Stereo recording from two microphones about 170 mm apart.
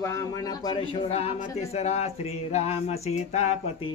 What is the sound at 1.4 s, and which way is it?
Speech, 40° left (ahead or behind).